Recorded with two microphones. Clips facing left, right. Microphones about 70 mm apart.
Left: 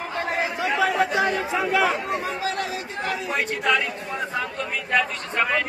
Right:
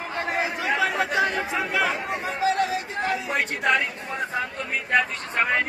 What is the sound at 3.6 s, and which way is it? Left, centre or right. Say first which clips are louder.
Speech: even; right.